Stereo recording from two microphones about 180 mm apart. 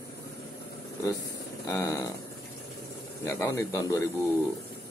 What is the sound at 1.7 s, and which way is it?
Speech, 20° left (ahead or behind).